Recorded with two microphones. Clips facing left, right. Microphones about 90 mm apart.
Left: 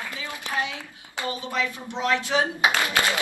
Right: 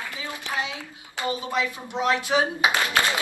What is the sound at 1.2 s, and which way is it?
Speech, 20° right (ahead or behind).